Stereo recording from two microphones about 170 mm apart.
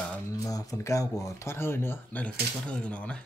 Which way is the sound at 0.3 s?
20° left (ahead or behind).